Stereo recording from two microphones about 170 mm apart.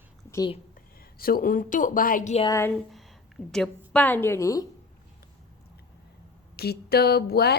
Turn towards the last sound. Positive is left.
turn(degrees=70)  # may be behind; listen again after turning